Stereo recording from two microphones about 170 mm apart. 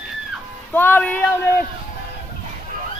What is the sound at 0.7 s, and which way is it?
Speech, 10° left (ahead or behind).